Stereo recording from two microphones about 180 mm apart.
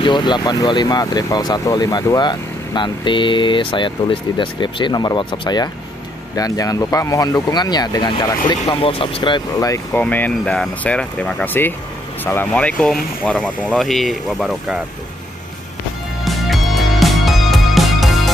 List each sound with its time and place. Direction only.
0.0 s speech: 25° left (ahead or behind)
10.0 s speech: 10° left (ahead or behind)
16.3 s music: centre (ahead or behind)